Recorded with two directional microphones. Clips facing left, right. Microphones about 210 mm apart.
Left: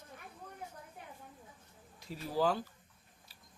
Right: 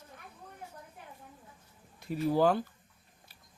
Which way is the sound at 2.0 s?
60° right (ahead or behind).